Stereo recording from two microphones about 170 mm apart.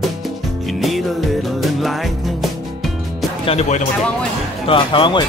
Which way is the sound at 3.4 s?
40° left (ahead or behind).